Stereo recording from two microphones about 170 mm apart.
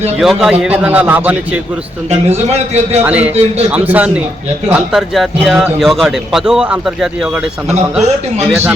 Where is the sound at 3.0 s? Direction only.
10° right (ahead or behind).